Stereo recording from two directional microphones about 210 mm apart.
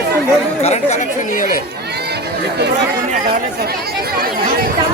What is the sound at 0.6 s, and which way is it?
Speech, 30° left (ahead or behind).